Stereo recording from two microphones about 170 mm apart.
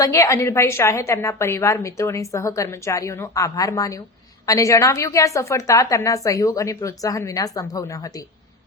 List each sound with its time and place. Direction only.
0.0 s a woman's voice: 20° left (ahead or behind)